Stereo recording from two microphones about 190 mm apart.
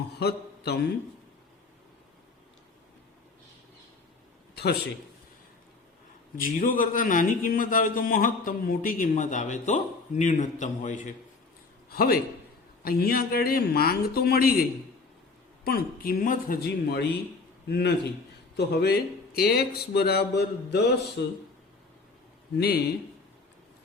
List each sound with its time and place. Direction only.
0.1 s a sound: 60° left (ahead or behind)
6.3 s a man's voice: 45° left (ahead or behind)
11.9 s a man's voice: 50° left (ahead or behind)
22.5 s speech: 55° left (ahead or behind)